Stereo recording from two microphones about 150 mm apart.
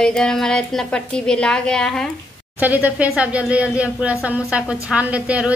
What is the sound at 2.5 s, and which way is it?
A woman's voice, 10° right (ahead or behind).